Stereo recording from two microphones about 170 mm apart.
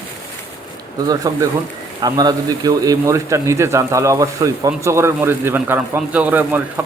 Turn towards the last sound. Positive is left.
turn(degrees=-10)  # may be behind; listen again after turning